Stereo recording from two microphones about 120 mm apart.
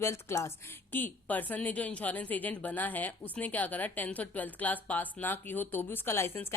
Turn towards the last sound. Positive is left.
turn(degrees=20)  # may be behind; listen again after turning